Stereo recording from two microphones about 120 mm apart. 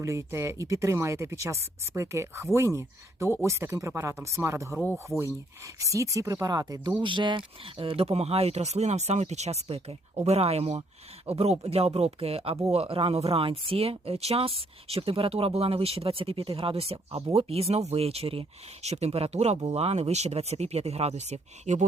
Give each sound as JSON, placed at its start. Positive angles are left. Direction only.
{"t": 0.0, "sound": "speech", "side_deg": -25}